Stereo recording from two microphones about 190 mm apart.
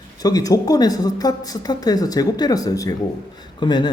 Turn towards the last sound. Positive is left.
turn(degrees=20)  # may be behind; listen again after turning